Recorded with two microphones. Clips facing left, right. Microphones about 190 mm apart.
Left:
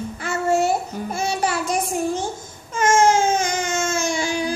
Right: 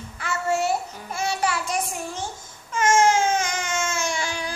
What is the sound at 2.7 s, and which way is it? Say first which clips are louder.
Baby cry: left 2 dB; 40° left (ahead or behind).